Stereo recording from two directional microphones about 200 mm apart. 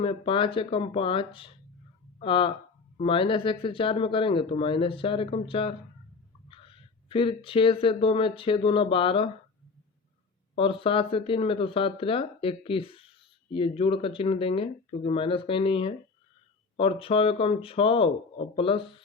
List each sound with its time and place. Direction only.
0.0 s speech: 25° left (ahead or behind)
10.5 s speech: 25° left (ahead or behind)